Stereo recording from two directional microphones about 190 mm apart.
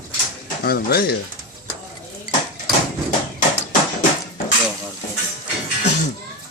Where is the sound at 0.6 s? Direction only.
55° left (ahead or behind).